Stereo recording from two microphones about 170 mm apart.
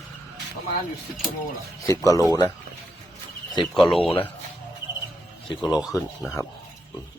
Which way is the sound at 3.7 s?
Centre (ahead or behind).